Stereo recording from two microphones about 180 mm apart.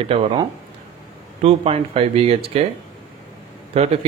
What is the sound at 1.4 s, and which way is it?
A man's voice, 35° right (ahead or behind).